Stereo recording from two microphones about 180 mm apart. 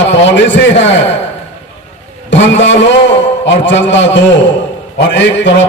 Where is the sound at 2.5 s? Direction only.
90° left.